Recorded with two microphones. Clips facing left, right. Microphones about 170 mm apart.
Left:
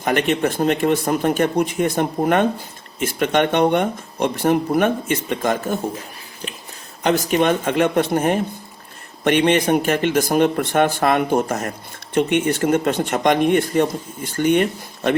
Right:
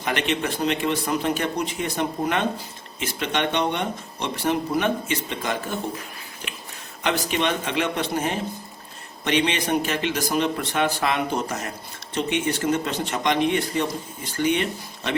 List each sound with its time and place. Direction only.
0.0 s speech: 45° left (ahead or behind)
6.4 s a sound: 35° left (ahead or behind)
7.0 s speech: 45° left (ahead or behind)